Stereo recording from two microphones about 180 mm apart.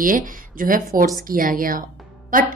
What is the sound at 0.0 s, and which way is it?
A woman's voice, 50° right (ahead or behind).